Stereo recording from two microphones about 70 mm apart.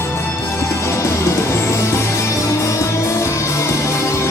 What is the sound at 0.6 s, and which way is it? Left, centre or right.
Music, left.